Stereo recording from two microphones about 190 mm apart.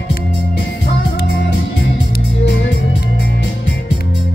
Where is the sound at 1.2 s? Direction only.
65° left (ahead or behind).